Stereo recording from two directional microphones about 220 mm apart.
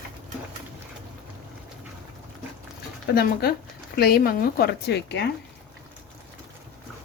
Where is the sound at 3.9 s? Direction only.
45° left (ahead or behind).